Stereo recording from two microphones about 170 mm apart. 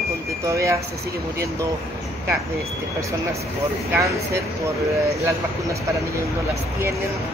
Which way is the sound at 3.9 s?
15° right (ahead or behind).